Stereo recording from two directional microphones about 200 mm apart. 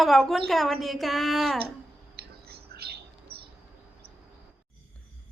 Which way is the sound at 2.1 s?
50° right (ahead or behind).